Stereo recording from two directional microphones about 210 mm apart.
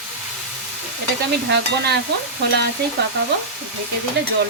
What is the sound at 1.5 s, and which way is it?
Speech, 50° right (ahead or behind).